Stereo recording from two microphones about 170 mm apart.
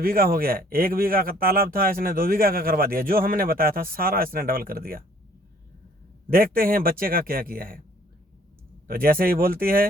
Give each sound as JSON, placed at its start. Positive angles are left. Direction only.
{"t": 0.0, "sound": "speech", "side_deg": -60}
{"t": 6.3, "sound": "speech", "side_deg": -60}
{"t": 8.9, "sound": "speech", "side_deg": -60}